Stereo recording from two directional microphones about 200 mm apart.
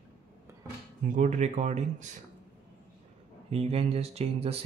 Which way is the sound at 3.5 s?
30° right (ahead or behind).